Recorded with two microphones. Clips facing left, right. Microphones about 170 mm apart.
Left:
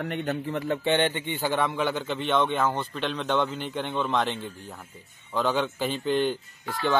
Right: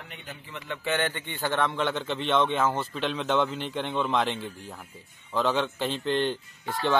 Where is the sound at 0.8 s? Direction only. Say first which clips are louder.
Left 3 dB; 30° left (ahead or behind).